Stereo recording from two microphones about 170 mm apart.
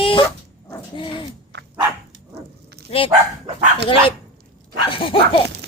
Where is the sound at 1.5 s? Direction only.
90° right.